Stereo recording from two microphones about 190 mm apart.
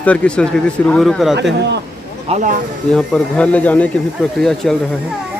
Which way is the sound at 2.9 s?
5° left (ahead or behind).